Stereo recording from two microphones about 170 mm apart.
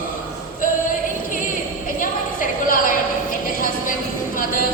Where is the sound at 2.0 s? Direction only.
55° left (ahead or behind).